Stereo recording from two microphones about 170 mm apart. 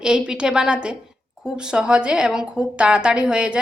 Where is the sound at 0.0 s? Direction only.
5° right (ahead or behind).